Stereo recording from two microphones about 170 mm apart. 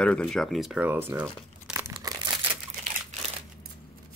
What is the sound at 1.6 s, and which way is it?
Crumpling, 10° right (ahead or behind).